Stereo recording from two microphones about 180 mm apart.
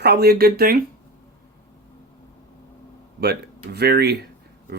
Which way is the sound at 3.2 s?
65° right (ahead or behind).